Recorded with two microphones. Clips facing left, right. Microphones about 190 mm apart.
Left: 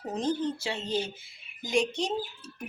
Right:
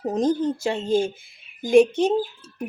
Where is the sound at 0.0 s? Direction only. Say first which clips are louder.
Right 8 dB; 45° right (ahead or behind).